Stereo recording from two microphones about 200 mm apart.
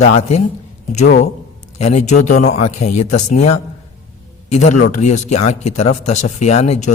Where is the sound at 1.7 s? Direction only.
35° left (ahead or behind).